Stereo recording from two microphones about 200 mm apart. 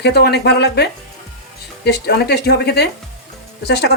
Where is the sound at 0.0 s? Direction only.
55° left (ahead or behind).